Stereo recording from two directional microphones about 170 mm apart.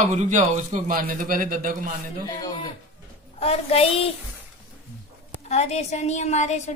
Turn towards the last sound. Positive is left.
turn(degrees=45)  # may be behind; listen again after turning